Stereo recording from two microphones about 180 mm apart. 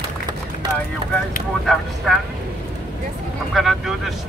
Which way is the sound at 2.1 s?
Centre (ahead or behind).